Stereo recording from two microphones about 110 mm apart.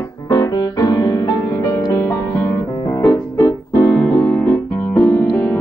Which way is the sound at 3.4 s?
30° left (ahead or behind).